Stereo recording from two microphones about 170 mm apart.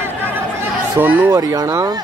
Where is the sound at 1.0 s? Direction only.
10° right (ahead or behind).